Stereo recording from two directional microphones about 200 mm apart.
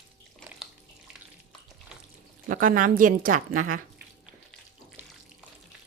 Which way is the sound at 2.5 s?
45° right (ahead or behind).